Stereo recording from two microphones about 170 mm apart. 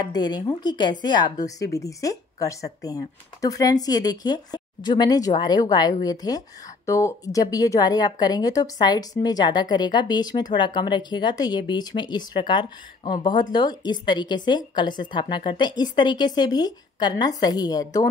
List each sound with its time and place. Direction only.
0.0 s a woman's voice: 25° left (ahead or behind)